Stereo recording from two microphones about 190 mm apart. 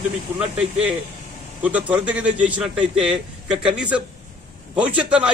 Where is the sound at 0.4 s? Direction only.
5° right (ahead or behind).